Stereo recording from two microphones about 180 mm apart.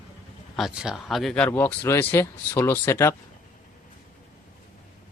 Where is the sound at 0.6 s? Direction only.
Centre (ahead or behind); by 3.1 s 15° left (ahead or behind).